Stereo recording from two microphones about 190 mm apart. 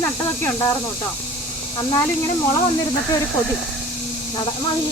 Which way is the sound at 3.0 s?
Centre (ahead or behind).